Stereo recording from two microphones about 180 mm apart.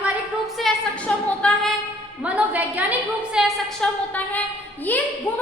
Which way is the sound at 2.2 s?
10° right (ahead or behind).